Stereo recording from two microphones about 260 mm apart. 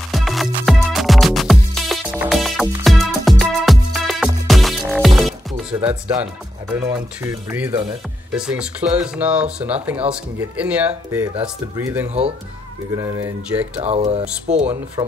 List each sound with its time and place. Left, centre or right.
0.1 s music: centre
5.7 s speech: centre
12.1 s speech: right
12.9 s speech: centre
13.7 s speech: right